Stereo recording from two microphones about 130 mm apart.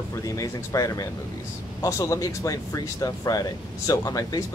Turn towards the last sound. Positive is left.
turn(degrees=30)  # may be behind; listen again after turning